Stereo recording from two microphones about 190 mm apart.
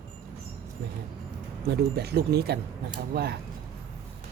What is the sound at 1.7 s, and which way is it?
Speech, 60° right (ahead or behind).